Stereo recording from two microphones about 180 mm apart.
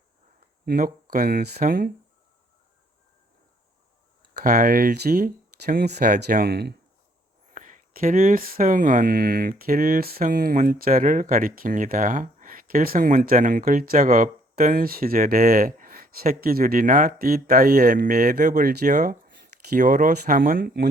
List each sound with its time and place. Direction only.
0.6 s speech: 55° right (ahead or behind)
4.4 s speech: 50° right (ahead or behind)
7.5 s speech: 45° right (ahead or behind)